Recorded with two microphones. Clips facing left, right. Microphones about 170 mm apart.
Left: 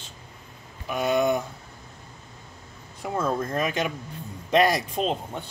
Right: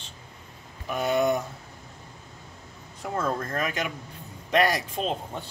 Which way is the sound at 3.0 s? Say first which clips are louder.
Left 2 dB; 10° left (ahead or behind).